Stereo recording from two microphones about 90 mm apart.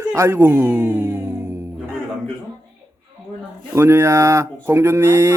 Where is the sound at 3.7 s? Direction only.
30° right (ahead or behind).